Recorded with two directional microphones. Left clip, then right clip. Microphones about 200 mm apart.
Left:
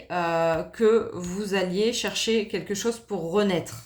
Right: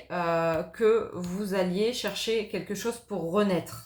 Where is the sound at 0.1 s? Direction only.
50° left (ahead or behind).